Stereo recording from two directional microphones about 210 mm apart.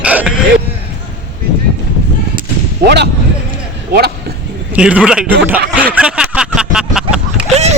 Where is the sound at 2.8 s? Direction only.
50° right (ahead or behind).